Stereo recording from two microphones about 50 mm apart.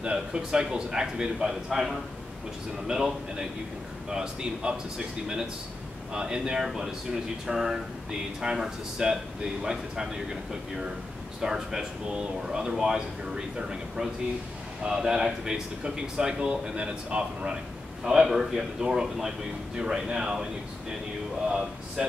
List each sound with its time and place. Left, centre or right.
0.0 s speech: centre
11.4 s speech: centre
18.0 s speech: centre
21.5 s speech: centre